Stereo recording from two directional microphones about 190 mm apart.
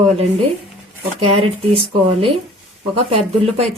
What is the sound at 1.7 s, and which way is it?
Speech, 30° right (ahead or behind).